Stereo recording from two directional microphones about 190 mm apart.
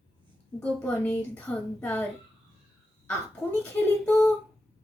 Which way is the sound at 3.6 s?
5° left (ahead or behind).